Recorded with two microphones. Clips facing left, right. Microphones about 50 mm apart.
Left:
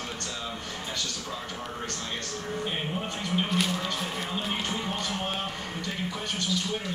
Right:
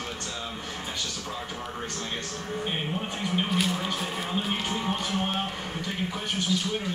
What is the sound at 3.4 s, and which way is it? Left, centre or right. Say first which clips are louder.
Speech: even; centre.